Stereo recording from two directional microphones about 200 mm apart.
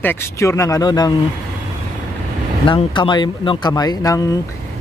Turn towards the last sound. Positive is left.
turn(degrees=15)  # may be behind; listen again after turning